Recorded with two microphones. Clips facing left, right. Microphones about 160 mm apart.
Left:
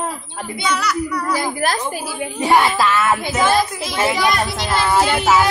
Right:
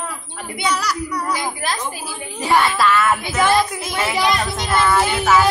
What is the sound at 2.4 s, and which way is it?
Speech, 20° left (ahead or behind).